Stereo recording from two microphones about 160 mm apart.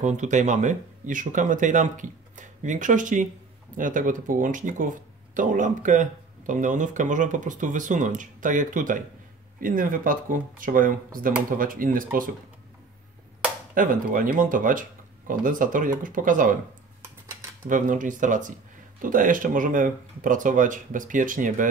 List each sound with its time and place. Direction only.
0.0 s speech: 50° right (ahead or behind)
13.7 s speech: 60° right (ahead or behind)
17.6 s speech: 55° right (ahead or behind)